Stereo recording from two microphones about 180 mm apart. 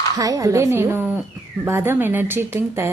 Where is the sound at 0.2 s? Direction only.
20° right (ahead or behind).